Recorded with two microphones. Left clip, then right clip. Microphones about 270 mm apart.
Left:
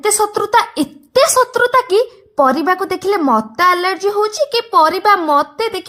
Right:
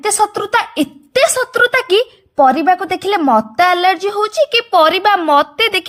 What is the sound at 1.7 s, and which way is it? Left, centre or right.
A woman's voice, centre.